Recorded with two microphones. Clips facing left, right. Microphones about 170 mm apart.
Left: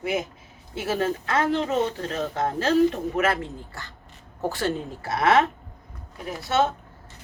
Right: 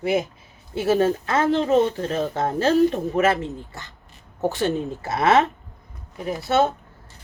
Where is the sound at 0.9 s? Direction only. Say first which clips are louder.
Right 6 dB; 30° right (ahead or behind).